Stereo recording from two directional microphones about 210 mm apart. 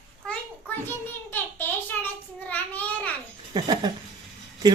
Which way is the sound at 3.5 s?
20° right (ahead or behind).